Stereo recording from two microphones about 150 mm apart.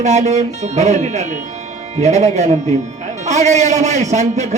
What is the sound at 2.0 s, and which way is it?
A man's voice, 45° right (ahead or behind).